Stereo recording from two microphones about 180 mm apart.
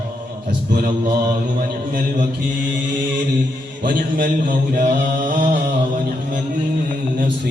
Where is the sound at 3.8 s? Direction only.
50° right (ahead or behind).